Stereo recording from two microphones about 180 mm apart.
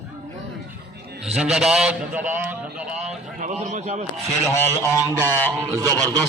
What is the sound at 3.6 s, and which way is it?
Speech, 40° right (ahead or behind).